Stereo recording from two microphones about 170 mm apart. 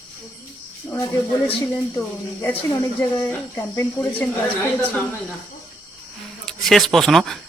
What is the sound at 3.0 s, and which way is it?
Speech, 10° left (ahead or behind).